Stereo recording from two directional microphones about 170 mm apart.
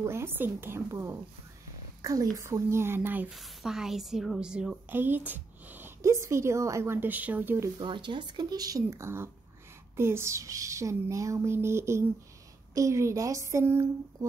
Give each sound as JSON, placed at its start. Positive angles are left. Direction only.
{"t": 0.0, "sound": "a woman's voice", "side_deg": -15}
{"t": 7.8, "sound": "a woman's voice", "side_deg": -30}